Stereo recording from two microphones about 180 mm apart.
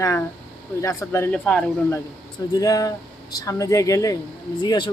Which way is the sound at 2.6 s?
20° left (ahead or behind).